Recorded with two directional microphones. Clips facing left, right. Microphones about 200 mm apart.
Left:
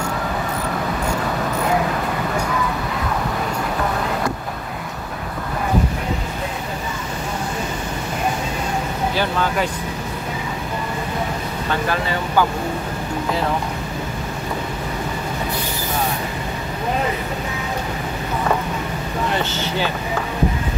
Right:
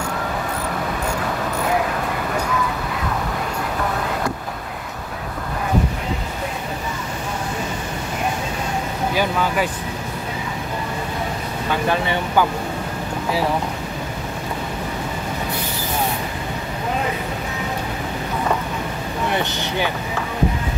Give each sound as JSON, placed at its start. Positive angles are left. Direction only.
{"t": 9.1, "sound": "speech", "side_deg": -10}
{"t": 11.9, "sound": "speech", "side_deg": -20}
{"t": 19.3, "sound": "speech", "side_deg": -15}